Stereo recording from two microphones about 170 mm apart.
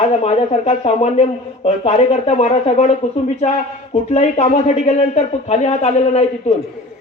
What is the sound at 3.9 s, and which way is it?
A man's voice, 40° left (ahead or behind).